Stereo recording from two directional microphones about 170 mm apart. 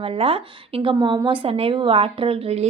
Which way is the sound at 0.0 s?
35° right (ahead or behind).